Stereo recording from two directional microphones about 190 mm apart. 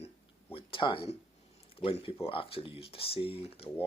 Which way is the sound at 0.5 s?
25° left (ahead or behind).